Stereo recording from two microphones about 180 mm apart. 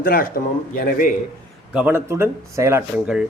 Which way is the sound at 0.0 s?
55° left (ahead or behind).